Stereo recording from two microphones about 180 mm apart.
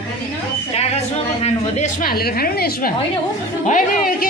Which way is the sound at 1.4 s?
40° left (ahead or behind).